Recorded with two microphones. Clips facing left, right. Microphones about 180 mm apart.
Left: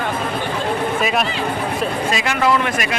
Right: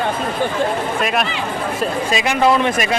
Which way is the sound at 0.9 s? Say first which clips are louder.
Even; centre (ahead or behind).